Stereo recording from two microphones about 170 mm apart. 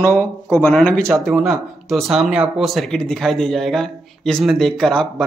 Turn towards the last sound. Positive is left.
turn(degrees=0)  # may be behind; listen again after turning